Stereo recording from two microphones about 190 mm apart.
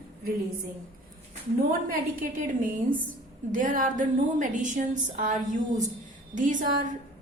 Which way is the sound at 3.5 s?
45° right (ahead or behind).